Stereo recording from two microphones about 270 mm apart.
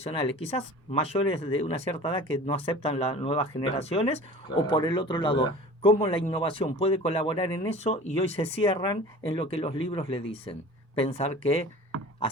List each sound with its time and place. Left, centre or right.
0.0 s speech: centre